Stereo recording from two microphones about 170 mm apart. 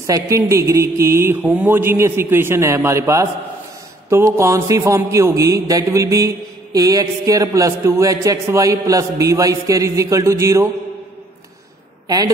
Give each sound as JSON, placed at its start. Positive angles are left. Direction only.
{"t": 0.0, "sound": "a man's voice", "side_deg": -20}